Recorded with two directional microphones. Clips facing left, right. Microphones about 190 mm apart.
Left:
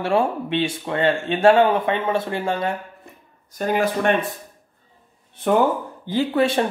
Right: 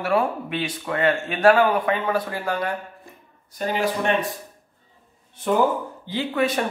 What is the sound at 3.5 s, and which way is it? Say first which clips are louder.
Speech: left 3 dB; 50° left (ahead or behind).